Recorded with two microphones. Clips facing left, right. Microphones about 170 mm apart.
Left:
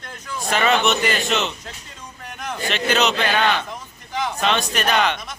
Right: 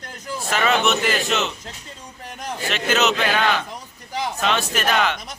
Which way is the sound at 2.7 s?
5° right (ahead or behind).